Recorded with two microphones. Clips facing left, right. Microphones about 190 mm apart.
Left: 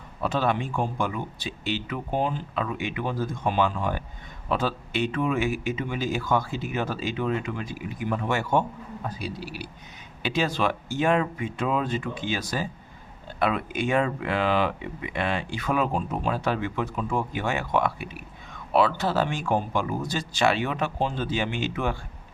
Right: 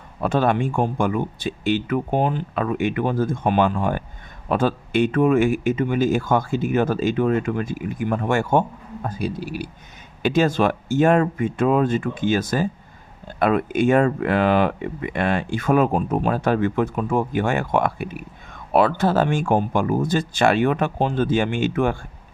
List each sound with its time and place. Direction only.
0.2 s a man's voice: 50° right (ahead or behind)